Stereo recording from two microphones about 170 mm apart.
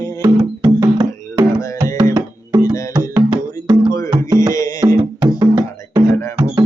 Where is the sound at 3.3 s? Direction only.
25° right (ahead or behind).